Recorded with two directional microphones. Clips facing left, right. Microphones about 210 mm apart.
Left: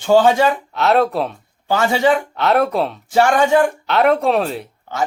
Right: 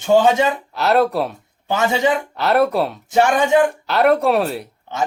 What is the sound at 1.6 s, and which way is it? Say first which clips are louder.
Speech: left 1 dB; 20° right (ahead or behind).